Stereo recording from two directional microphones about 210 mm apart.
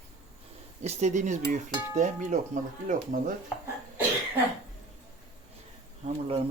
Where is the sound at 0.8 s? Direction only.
30° right (ahead or behind).